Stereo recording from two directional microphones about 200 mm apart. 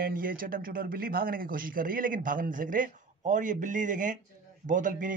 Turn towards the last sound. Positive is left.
turn(degrees=-40)  # may be behind; listen again after turning